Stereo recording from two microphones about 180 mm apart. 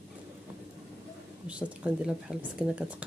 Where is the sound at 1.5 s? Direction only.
5° right (ahead or behind).